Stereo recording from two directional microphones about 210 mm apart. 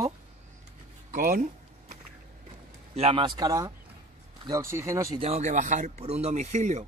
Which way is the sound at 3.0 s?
25° right (ahead or behind).